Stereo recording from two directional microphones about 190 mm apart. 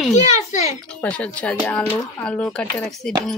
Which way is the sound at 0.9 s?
5° left (ahead or behind).